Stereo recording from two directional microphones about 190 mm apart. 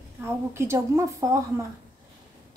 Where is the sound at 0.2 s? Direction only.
15° right (ahead or behind).